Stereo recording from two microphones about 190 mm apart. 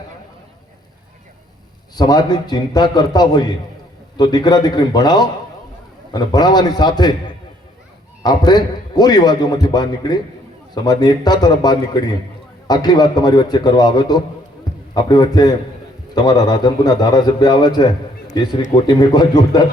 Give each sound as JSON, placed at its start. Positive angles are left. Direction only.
{"t": 2.0, "sound": "a man's voice", "side_deg": 20}
{"t": 8.2, "sound": "a man's voice", "side_deg": 20}